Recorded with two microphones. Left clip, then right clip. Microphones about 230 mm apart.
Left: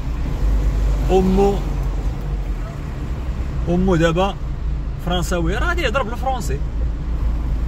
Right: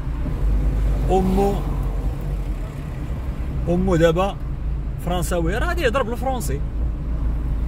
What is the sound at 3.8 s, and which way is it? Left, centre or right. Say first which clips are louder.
A man's voice: even; right.